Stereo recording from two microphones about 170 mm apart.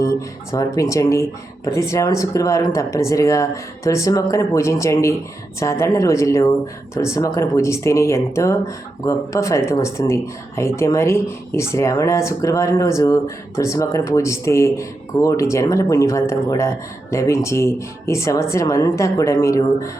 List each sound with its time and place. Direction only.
0.5 s speech: 20° left (ahead or behind)